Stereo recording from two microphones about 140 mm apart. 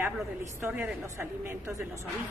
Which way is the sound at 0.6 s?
15° right (ahead or behind).